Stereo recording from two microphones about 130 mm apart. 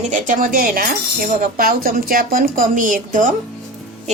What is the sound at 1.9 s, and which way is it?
A woman's voice, 90° right.